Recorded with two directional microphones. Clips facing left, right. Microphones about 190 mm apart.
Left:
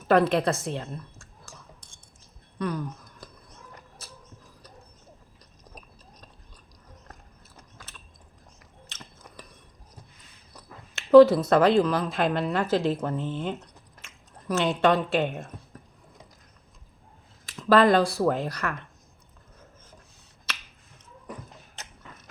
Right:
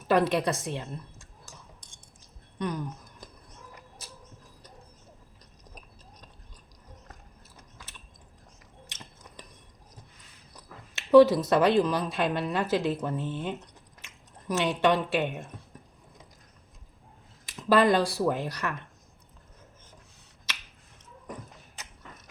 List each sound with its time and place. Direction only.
0.1 s speech: 15° right (ahead or behind)
2.6 s a sound: 20° right (ahead or behind)
8.9 s finger snapping: 20° right (ahead or behind)
11.1 s speech: 15° right (ahead or behind)
14.4 s speech: 15° right (ahead or behind)
17.4 s speech: 15° right (ahead or behind)